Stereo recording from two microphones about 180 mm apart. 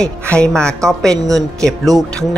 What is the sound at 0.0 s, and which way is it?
Speech, 5° left (ahead or behind).